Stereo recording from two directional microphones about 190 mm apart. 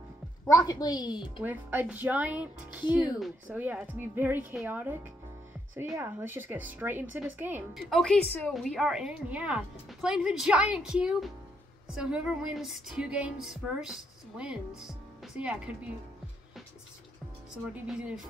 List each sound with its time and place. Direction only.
0.5 s a woman's voice: 20° left (ahead or behind)
1.4 s a woman's voice: 10° right (ahead or behind)
17.7 s speech: 5° right (ahead or behind)